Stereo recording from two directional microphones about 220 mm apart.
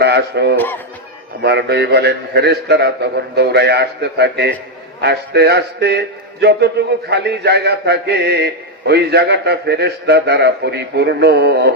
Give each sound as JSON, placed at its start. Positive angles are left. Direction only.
{"t": 0.0, "sound": "speech", "side_deg": -50}
{"t": 0.5, "sound": "speech", "side_deg": 10}
{"t": 1.4, "sound": "a man's voice", "side_deg": -50}